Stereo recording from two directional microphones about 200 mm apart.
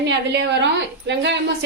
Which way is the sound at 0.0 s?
60° right (ahead or behind).